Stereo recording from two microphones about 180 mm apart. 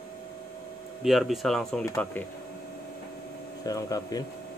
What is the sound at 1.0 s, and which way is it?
Speech, centre (ahead or behind).